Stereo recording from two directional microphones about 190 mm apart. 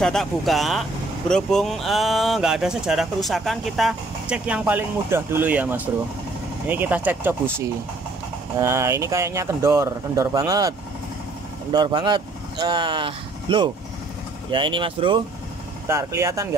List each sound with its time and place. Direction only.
0.0 s speech: centre (ahead or behind)
8.5 s speech: 15° right (ahead or behind)
11.7 s speech: 25° right (ahead or behind)
15.9 s speech: 15° right (ahead or behind)